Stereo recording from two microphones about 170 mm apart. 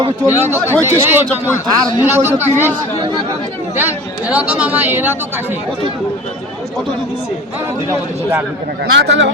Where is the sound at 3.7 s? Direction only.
10° right (ahead or behind).